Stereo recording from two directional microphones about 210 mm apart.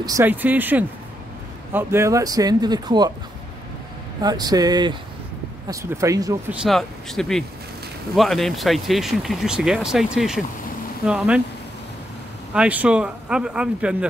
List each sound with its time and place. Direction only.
0.0 s speech: 15° right (ahead or behind)
4.2 s speech: 20° right (ahead or behind)
6.5 s speech: centre (ahead or behind)
12.5 s speech: 5° right (ahead or behind)